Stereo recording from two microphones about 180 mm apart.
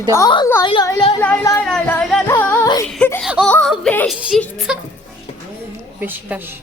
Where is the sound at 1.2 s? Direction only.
10° left (ahead or behind).